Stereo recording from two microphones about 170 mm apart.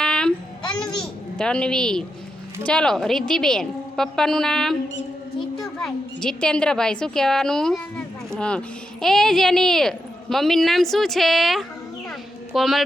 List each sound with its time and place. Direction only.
0.0 s child singing: 5° left (ahead or behind)
0.8 s babbling: 5° left (ahead or behind)
2.6 s a woman's voice: 5° left (ahead or behind)